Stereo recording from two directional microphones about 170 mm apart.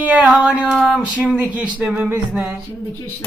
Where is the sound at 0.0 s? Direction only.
10° right (ahead or behind).